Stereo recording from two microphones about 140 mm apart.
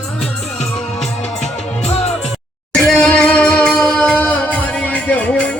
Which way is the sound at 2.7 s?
5° left (ahead or behind).